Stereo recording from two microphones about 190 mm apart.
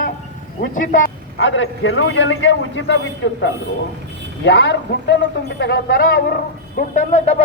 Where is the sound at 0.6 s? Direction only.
45° left (ahead or behind).